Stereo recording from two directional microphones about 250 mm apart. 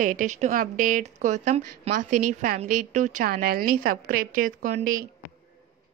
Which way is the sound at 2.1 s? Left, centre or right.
Right.